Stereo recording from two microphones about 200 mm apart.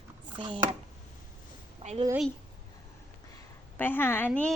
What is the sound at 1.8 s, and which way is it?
Speech, 35° right (ahead or behind).